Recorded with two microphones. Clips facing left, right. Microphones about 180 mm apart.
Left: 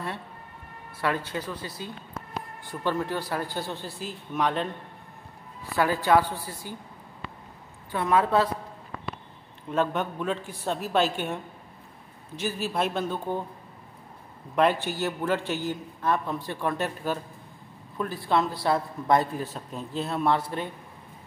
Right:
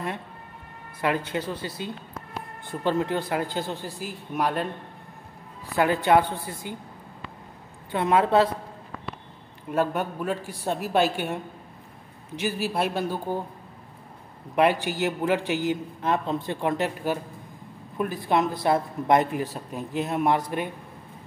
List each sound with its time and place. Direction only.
1.0 s a woman's voice: 20° right (ahead or behind)
5.8 s a woman's voice: 20° right (ahead or behind)
7.9 s a woman's voice: 25° right (ahead or behind)
9.7 s a man's voice: 10° right (ahead or behind)
12.4 s a man's voice: 10° right (ahead or behind)
14.5 s a man's voice: 15° right (ahead or behind)